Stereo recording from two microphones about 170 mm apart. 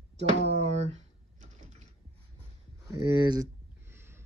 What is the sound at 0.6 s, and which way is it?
Typing, 40° right (ahead or behind).